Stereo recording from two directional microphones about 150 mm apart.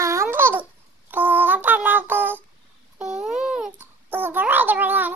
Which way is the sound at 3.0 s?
5° right (ahead or behind).